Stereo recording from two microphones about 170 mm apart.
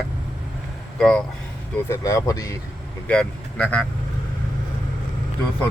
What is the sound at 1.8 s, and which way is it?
Speech, 20° left (ahead or behind).